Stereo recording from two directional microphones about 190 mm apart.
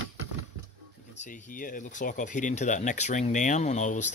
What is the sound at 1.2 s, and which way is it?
Speech, 45° left (ahead or behind).